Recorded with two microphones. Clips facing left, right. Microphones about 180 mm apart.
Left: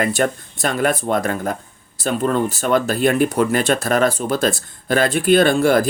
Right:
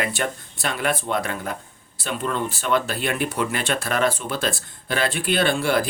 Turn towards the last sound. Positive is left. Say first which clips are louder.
# left 7 dB
turn(degrees=45)  # may be behind; listen again after turning